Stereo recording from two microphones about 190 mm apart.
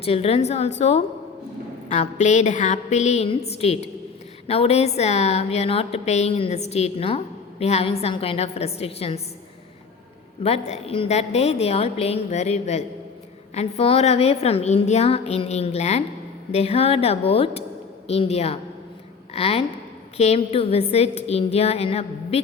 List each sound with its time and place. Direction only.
0.0 s a woman's voice: 30° left (ahead or behind)
10.4 s a woman's voice: 30° left (ahead or behind)